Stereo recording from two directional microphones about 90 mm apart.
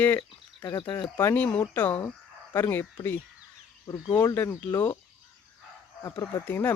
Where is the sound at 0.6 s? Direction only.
55° left (ahead or behind).